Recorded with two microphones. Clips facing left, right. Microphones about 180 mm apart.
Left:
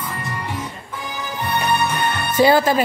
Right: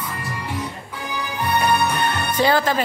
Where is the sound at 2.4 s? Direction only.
10° left (ahead or behind).